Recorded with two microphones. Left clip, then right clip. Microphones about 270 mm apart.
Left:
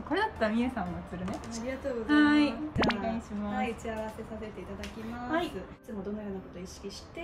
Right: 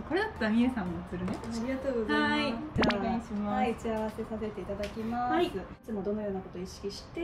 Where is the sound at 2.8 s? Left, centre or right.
Centre.